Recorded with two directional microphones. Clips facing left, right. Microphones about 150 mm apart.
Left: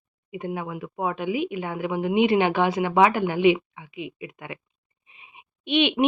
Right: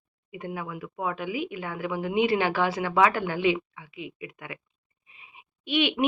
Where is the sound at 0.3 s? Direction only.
20° left (ahead or behind).